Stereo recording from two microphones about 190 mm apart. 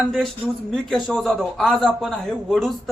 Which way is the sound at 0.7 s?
Centre (ahead or behind).